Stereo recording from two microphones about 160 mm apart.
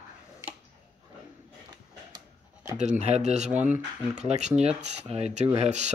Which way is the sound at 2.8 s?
45° right (ahead or behind).